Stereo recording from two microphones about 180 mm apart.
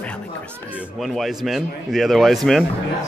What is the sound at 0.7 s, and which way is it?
A man's voice, 5° right (ahead or behind).